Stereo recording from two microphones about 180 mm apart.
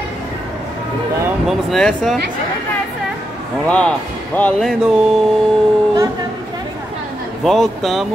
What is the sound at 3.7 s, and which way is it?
Speech, 5° left (ahead or behind).